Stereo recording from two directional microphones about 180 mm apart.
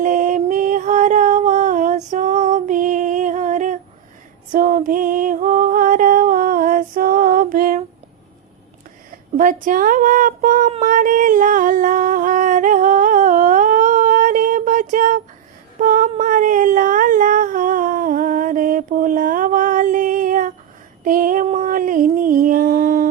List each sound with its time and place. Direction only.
0.0 s music: 45° right (ahead or behind)
4.5 s female singing: 50° right (ahead or behind)
9.4 s female singing: 45° right (ahead or behind)
15.8 s a sound: 50° right (ahead or behind)